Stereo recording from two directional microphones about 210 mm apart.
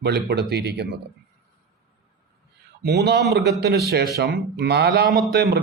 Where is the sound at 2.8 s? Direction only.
50° right (ahead or behind).